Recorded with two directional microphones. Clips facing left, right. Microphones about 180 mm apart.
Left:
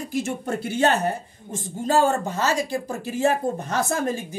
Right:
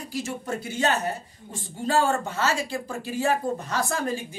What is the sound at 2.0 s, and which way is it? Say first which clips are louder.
Speech: left 2 dB; 40° left (ahead or behind).